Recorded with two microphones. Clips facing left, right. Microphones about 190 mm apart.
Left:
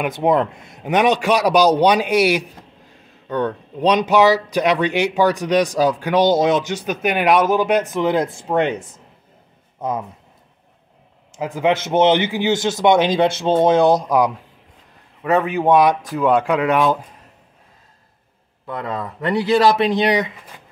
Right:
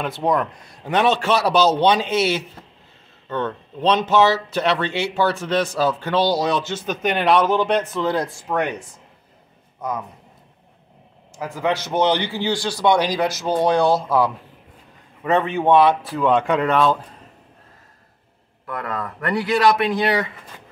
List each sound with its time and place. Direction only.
0.0 s a man's voice: 20° left (ahead or behind)
11.3 s speech: 20° left (ahead or behind)
18.7 s speech: 20° left (ahead or behind)